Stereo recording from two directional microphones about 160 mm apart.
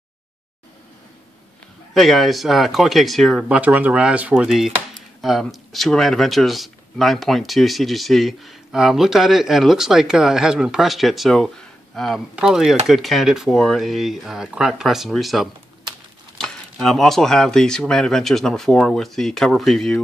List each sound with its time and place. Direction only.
2.0 s speech: centre (ahead or behind)